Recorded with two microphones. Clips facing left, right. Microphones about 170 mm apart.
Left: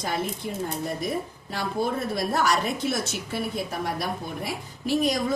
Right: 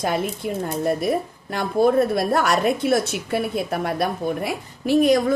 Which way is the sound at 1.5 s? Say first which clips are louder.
Right 9 dB; 55° right (ahead or behind).